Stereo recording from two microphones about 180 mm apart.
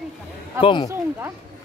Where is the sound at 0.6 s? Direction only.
25° left (ahead or behind).